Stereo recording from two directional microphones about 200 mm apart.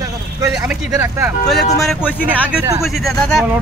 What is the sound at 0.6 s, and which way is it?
Speech, 10° right (ahead or behind).